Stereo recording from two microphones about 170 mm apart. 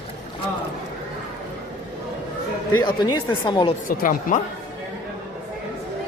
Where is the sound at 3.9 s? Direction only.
55° left (ahead or behind).